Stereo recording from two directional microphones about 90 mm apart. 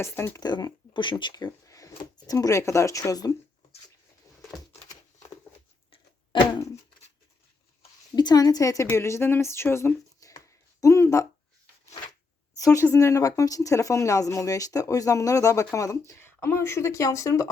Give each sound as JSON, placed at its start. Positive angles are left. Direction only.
{"t": 0.0, "sound": "speech", "side_deg": 25}
{"t": 0.3, "sound": "speech", "side_deg": 50}
{"t": 1.3, "sound": "speech", "side_deg": 40}
{"t": 6.3, "sound": "a sound", "side_deg": 65}
{"t": 8.1, "sound": "a woman's voice", "side_deg": 50}
{"t": 10.2, "sound": "a sound", "side_deg": 40}
{"t": 12.5, "sound": "speech", "side_deg": 35}